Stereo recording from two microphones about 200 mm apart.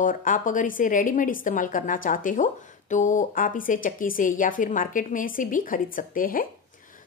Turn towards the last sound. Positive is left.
turn(degrees=40)  # may be behind; listen again after turning